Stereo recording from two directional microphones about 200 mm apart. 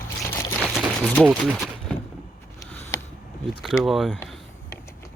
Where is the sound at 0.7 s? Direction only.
Centre (ahead or behind).